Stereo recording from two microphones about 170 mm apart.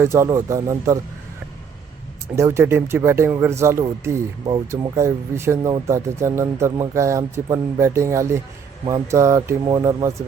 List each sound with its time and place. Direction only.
0.0 s speech: 15° right (ahead or behind)
2.3 s speech: 15° right (ahead or behind)